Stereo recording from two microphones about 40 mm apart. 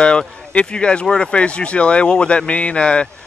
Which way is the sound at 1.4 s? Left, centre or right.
Left.